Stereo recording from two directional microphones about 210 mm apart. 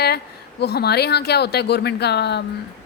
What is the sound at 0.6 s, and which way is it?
A woman's voice, 50° left (ahead or behind).